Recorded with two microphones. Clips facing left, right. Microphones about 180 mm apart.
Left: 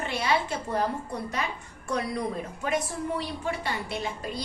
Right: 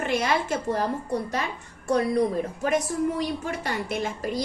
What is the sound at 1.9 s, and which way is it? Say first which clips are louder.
A woman's voice: right 7 dB; 35° right (ahead or behind).